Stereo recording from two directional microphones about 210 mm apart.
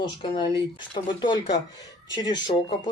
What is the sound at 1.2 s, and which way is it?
Speech, 20° left (ahead or behind).